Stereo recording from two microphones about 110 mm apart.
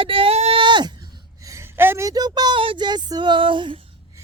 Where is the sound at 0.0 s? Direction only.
55° right (ahead or behind).